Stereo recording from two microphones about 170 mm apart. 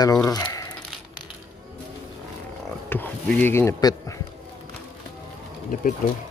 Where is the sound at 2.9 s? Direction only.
10° left (ahead or behind).